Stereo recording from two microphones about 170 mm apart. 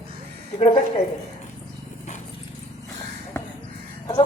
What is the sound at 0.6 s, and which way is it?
Speech, 40° left (ahead or behind).